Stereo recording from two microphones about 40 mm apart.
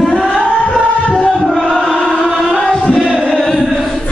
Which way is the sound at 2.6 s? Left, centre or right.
Centre.